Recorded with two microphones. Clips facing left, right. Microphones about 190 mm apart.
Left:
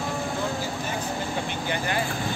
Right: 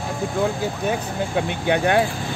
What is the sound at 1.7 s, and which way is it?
Speech, 70° right (ahead or behind).